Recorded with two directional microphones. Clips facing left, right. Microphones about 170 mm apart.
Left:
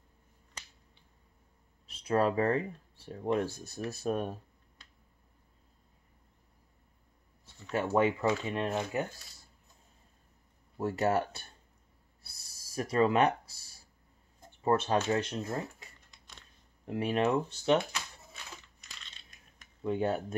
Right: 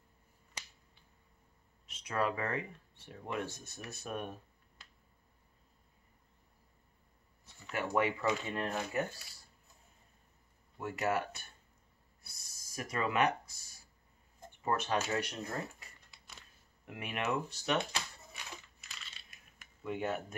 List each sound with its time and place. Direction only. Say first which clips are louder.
1.9 s speech: left 6 dB; 35° left (ahead or behind)
7.7 s speech: left 5 dB; 30° left (ahead or behind)
10.8 s speech: left 5 dB; 35° left (ahead or behind)
12.2 s a sound: left 1 dB; 30° left (ahead or behind)
14.6 s speech: left 6 dB; 30° left (ahead or behind)
16.1 s a sound: even; 5° right (ahead or behind)
16.8 s speech: left 9 dB; 30° left (ahead or behind)
18.3 s crushing: even; 10° right (ahead or behind)
19.8 s speech: left 6 dB; 30° left (ahead or behind)